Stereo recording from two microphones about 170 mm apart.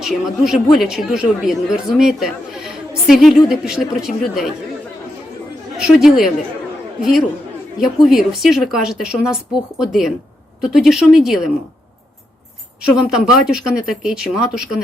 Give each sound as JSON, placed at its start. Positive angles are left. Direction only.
{"t": 0.0, "sound": "speech", "side_deg": -5}
{"t": 5.7, "sound": "speech", "side_deg": -5}
{"t": 8.0, "sound": "speech", "side_deg": 0}
{"t": 13.0, "sound": "speech", "side_deg": -5}